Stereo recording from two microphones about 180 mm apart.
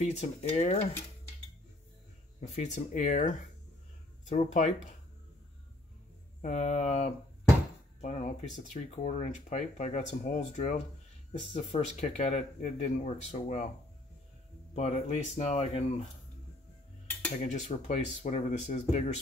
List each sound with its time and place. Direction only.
0.0 s speech: 40° left (ahead or behind)
2.4 s speech: 40° left (ahead or behind)
6.4 s speech: 40° left (ahead or behind)
14.8 s speech: 40° left (ahead or behind)
17.4 s speech: 40° left (ahead or behind)